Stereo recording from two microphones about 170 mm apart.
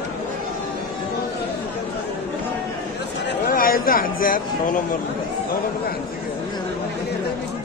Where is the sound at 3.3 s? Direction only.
60° left (ahead or behind).